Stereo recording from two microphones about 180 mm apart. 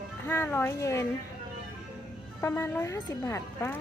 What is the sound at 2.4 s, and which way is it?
A woman's voice, 15° left (ahead or behind).